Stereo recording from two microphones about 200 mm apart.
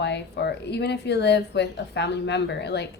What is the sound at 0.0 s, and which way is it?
Speech, 60° left (ahead or behind).